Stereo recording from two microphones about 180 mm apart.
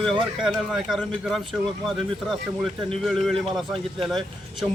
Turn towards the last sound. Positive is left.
turn(degrees=0)  # may be behind; listen again after turning